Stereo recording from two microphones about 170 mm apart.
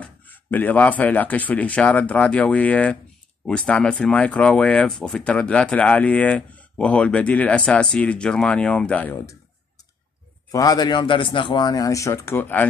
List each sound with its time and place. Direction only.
0.0 s speech: 10° left (ahead or behind)
10.5 s speech: 20° left (ahead or behind)